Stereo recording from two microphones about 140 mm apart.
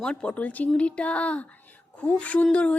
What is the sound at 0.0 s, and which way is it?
A woman's voice, 5° left (ahead or behind).